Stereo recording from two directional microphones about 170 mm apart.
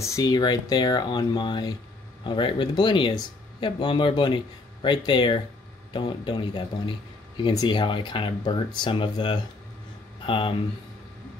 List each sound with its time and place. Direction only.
0.0 s speech: 20° left (ahead or behind)